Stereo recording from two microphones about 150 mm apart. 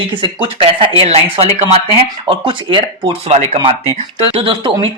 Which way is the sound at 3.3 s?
50° right (ahead or behind).